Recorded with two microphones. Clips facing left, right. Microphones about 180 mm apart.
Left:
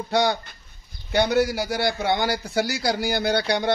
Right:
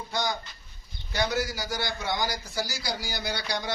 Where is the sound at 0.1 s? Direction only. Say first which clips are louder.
Left 9 dB; 70° left (ahead or behind).